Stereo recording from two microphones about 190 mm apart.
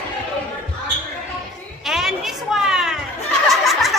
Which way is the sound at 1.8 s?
Centre (ahead or behind).